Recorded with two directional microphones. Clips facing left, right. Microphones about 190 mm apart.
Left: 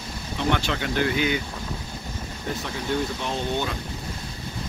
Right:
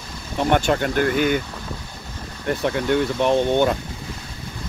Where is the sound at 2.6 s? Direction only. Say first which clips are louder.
Right 8 dB; 65° right (ahead or behind).